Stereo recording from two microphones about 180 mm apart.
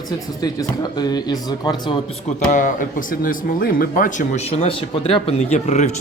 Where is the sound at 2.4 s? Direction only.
45° left (ahead or behind).